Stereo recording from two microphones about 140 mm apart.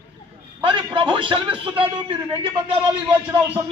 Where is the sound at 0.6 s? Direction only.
35° right (ahead or behind).